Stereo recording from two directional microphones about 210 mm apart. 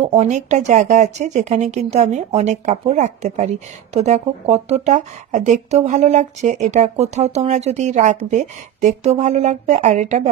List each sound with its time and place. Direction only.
0.0 s speech: 30° right (ahead or behind)